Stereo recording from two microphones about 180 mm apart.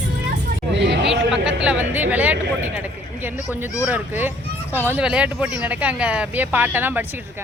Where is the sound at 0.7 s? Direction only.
75° right (ahead or behind).